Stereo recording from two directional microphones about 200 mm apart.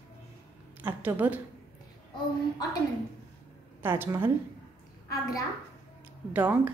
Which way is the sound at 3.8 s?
10° right (ahead or behind).